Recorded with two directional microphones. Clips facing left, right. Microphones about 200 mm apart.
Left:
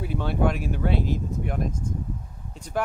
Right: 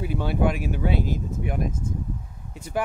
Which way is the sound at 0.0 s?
5° right (ahead or behind).